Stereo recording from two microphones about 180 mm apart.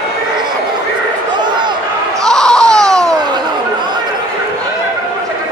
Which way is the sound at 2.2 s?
5° left (ahead or behind).